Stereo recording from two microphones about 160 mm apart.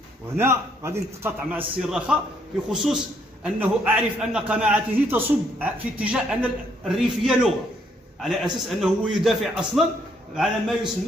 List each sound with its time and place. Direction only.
0.4 s a man's voice: 15° right (ahead or behind)
1.8 s a man's voice: 5° right (ahead or behind)